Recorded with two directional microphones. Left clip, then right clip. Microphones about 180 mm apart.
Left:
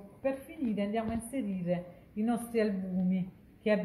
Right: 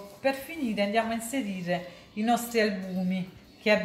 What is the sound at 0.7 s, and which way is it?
A woman's voice, 15° left (ahead or behind).